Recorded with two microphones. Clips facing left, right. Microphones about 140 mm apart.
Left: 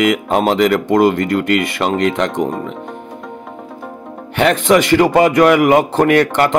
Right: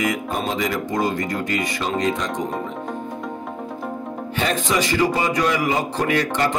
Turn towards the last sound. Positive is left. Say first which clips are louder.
# left 8 dB
turn(degrees=65)  # may be behind; listen again after turning